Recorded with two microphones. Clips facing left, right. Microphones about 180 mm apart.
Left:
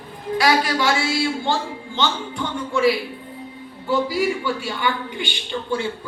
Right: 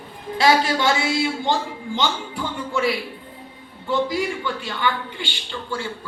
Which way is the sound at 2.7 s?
Centre (ahead or behind).